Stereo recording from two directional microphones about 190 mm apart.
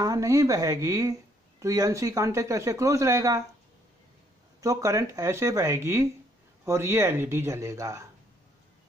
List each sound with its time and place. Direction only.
0.0 s speech: 20° right (ahead or behind)
4.6 s speech: 15° right (ahead or behind)